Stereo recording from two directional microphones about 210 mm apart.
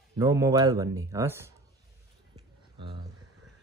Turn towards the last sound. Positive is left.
turn(degrees=-20)  # may be behind; listen again after turning